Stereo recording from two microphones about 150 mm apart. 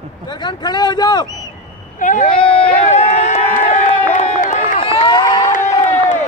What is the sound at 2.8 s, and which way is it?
Speech, 50° left (ahead or behind).